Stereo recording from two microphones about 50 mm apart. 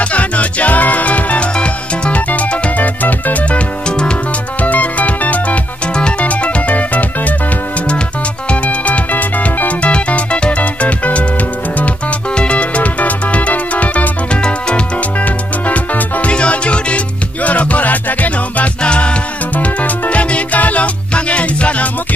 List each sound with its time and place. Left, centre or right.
0.0 s music: left
4.6 s music: left
8.5 s music: left
18.8 s music: left